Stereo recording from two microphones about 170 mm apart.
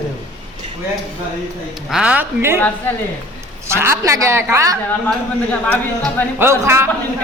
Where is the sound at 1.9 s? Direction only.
5° right (ahead or behind).